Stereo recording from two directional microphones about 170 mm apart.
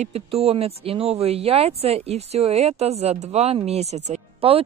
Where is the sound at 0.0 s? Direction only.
35° right (ahead or behind).